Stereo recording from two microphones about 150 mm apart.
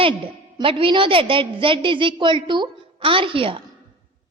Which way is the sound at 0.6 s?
35° right (ahead or behind).